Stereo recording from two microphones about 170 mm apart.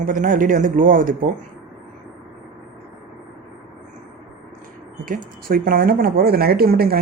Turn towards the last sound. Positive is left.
turn(degrees=-65)  # may be behind; listen again after turning